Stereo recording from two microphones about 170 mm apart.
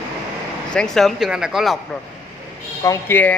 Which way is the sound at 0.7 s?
Centre (ahead or behind).